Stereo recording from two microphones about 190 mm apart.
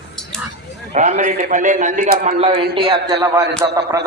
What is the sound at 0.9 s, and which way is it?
A man's voice, 40° right (ahead or behind).